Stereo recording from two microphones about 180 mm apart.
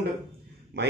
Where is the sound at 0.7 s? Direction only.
65° right (ahead or behind).